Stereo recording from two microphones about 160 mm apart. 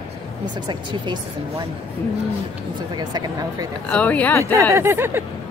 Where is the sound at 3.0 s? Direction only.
25° right (ahead or behind).